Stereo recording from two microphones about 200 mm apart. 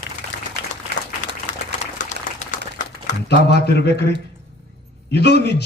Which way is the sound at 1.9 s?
40° left (ahead or behind).